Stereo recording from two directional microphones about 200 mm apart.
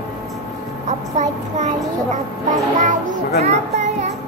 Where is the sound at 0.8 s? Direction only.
35° right (ahead or behind).